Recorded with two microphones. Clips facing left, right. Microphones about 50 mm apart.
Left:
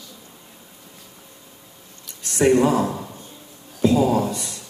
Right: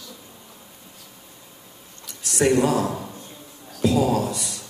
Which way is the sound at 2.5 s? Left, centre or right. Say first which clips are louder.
Left 2 dB; left.